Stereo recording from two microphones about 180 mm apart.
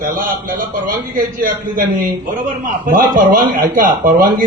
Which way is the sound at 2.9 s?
50° right (ahead or behind).